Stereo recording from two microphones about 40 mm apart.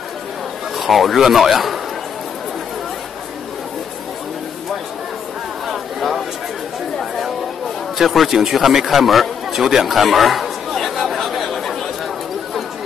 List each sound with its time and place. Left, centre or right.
0.7 s a man's voice: centre
5.7 s a sound: centre
8.0 s a man's voice: centre
9.5 s chatter: centre